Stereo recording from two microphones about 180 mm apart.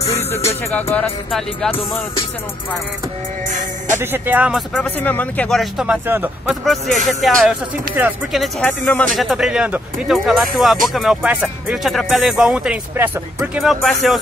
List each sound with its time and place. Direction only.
0.7 s music: 10° left (ahead or behind)
4.0 s speech: 10° right (ahead or behind)
4.7 s speech: 10° left (ahead or behind); by 6.5 s 10° right (ahead or behind)
6.5 s speech: centre (ahead or behind)
13.6 s speech: centre (ahead or behind)